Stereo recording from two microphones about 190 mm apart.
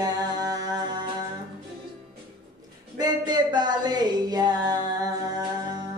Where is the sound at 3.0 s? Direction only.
20° right (ahead or behind).